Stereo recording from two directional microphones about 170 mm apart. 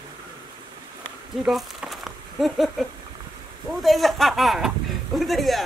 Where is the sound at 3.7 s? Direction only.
Centre (ahead or behind).